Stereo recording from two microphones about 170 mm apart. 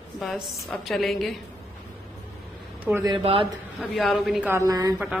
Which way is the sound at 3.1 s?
35° right (ahead or behind).